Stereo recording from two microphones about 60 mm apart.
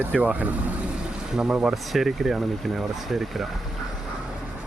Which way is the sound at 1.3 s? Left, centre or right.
Centre.